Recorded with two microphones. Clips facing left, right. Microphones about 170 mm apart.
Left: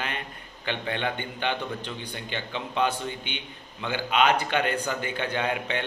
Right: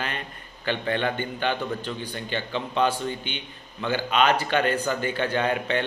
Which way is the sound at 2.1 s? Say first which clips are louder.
Right 4 dB; 15° left (ahead or behind).